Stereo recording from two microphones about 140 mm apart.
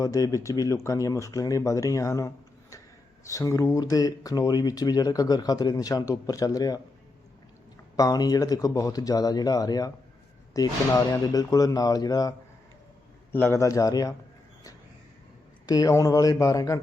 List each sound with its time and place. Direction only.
0.0 s speech: 25° left (ahead or behind)
7.9 s speech: 25° left (ahead or behind)
13.3 s speech: 15° left (ahead or behind)
15.6 s speech: 25° left (ahead or behind)